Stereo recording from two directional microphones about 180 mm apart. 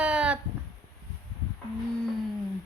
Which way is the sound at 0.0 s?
5° right (ahead or behind).